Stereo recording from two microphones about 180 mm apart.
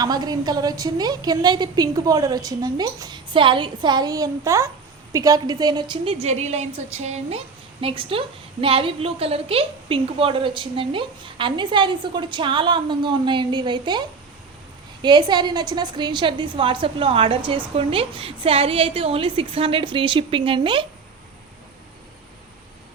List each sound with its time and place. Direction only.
0.0 s a woman's voice: 20° right (ahead or behind)